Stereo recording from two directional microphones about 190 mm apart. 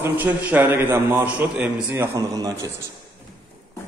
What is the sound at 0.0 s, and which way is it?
A man's voice, 10° right (ahead or behind).